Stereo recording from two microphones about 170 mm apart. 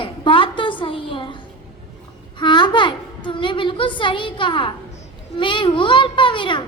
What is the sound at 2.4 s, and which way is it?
A woman's voice, 25° left (ahead or behind).